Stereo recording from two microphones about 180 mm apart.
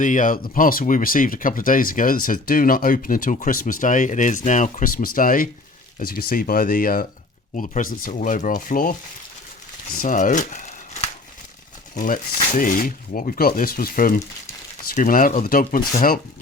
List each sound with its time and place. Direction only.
0.0 s speech: 45° left (ahead or behind)